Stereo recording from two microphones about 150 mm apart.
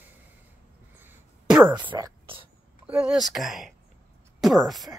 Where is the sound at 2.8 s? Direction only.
5° right (ahead or behind).